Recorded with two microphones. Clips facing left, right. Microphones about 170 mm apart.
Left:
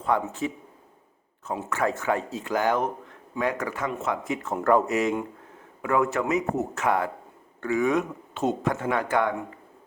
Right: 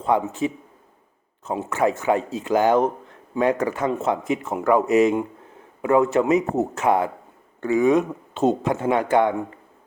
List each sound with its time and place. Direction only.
0.0 s speech: 20° right (ahead or behind)
4.5 s speech: 10° right (ahead or behind)
4.9 s speech: 20° right (ahead or behind)